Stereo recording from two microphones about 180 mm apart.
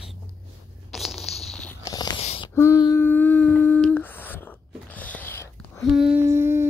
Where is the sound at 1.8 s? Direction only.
20° left (ahead or behind).